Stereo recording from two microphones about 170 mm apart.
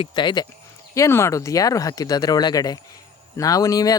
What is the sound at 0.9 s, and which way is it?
Speech, 15° left (ahead or behind).